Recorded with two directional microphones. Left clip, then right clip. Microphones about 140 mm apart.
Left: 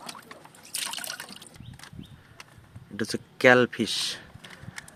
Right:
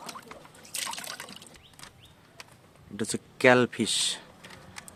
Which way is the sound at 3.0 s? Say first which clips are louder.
Left 2 dB; centre (ahead or behind).